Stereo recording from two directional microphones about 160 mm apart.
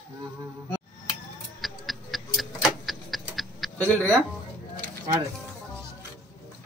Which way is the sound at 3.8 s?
10° left (ahead or behind).